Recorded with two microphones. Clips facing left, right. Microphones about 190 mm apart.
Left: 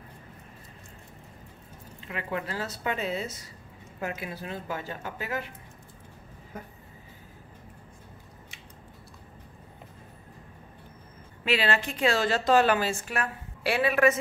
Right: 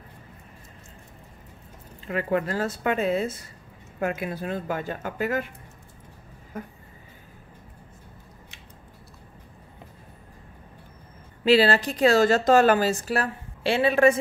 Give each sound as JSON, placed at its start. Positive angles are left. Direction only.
{"t": 2.0, "sound": "speech", "side_deg": -50}
{"t": 11.4, "sound": "a woman's voice", "side_deg": -35}